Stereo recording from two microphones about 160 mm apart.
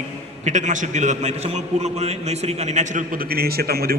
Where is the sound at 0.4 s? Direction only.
50° right (ahead or behind).